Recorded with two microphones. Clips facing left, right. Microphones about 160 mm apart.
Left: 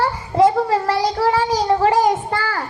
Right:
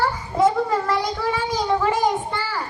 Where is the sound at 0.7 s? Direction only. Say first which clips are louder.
Left 3 dB; 80° left.